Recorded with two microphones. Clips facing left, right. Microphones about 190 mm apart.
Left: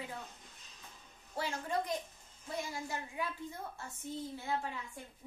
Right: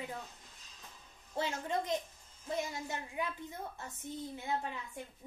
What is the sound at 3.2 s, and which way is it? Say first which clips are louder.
A child's voice: right 2 dB; 20° right (ahead or behind).